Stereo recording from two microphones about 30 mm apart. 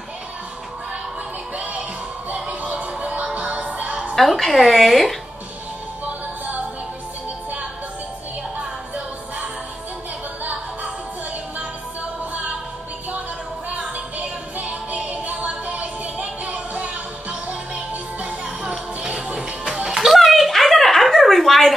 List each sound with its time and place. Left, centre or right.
1.6 s music: right
4.1 s a woman's voice: centre
13.7 s music: right
19.2 s music: right
20.0 s a sound: centre